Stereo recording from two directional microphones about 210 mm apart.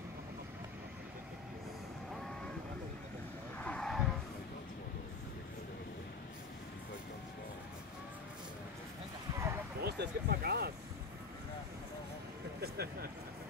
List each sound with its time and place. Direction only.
3.6 s vehicle: 5° left (ahead or behind)
9.8 s speech: 50° right (ahead or behind)
12.5 s a sound: 50° right (ahead or behind)